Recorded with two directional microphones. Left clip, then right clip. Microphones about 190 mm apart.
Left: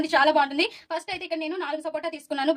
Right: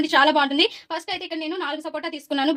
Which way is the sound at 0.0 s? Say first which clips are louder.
Right 2 dB; 40° right (ahead or behind).